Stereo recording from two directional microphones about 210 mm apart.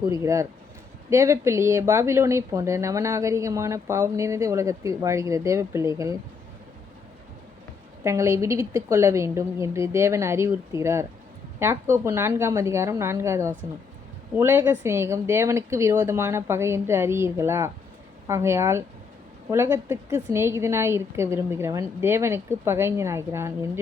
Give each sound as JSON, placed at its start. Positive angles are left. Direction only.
{"t": 0.0, "sound": "a woman's voice", "side_deg": -15}
{"t": 8.0, "sound": "a woman's voice", "side_deg": -15}